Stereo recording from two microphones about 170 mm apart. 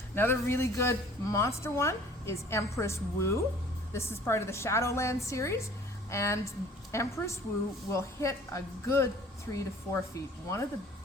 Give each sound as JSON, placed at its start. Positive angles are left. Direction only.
{"t": 0.1, "sound": "a woman's voice", "side_deg": 15}